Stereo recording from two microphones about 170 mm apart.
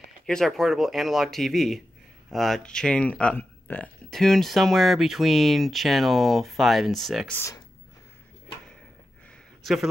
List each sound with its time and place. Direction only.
0.3 s speech: centre (ahead or behind)
7.3 s speech: 15° left (ahead or behind)
9.6 s a sound: centre (ahead or behind)